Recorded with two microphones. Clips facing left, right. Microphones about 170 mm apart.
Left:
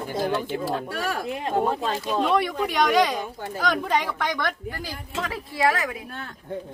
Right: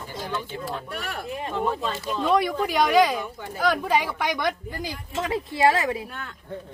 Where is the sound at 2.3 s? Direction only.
Centre (ahead or behind); by 6.0 s 25° right (ahead or behind).